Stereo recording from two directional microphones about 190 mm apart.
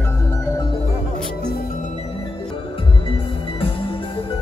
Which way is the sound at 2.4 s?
25° left (ahead or behind).